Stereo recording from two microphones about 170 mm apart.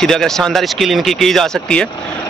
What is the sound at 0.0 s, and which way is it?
Speech, 5° left (ahead or behind).